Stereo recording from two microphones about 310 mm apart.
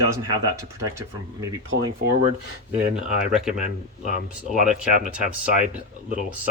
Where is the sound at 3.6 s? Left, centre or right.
Left.